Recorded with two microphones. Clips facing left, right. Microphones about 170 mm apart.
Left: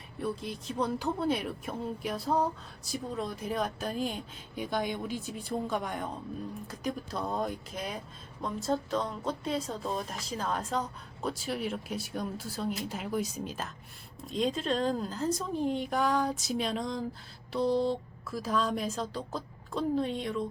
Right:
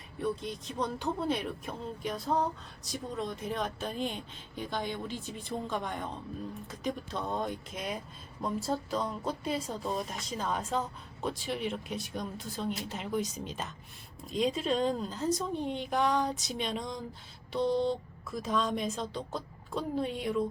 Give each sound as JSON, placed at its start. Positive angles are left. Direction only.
{"t": 0.2, "sound": "speech", "side_deg": 0}